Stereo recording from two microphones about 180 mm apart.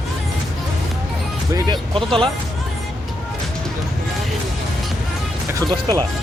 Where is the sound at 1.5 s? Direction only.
25° right (ahead or behind).